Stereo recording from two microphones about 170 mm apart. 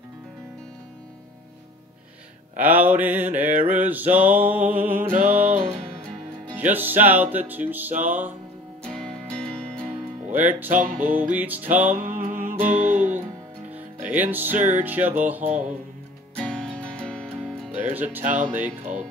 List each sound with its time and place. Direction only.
2.5 s music: 10° right (ahead or behind)
5.5 s music: 50° right (ahead or behind)
6.7 s music: 10° right (ahead or behind)
8.8 s music: 5° left (ahead or behind)
10.3 s music: 10° right (ahead or behind)
10.7 s music: 50° right (ahead or behind)
11.2 s music: 10° right (ahead or behind)
12.0 s music: 55° right (ahead or behind)
13.7 s music: 10° right (ahead or behind)
16.3 s music: 5° left (ahead or behind)
17.4 s music: 10° right (ahead or behind)
18.2 s music: 45° right (ahead or behind)